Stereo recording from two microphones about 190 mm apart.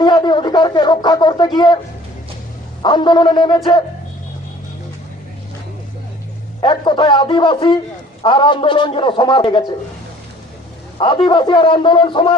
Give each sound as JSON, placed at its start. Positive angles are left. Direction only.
{"t": 0.0, "sound": "a sound", "side_deg": 25}
{"t": 2.8, "sound": "a man's voice", "side_deg": 25}
{"t": 6.6, "sound": "a man's voice", "side_deg": 25}
{"t": 10.9, "sound": "a man's voice", "side_deg": 25}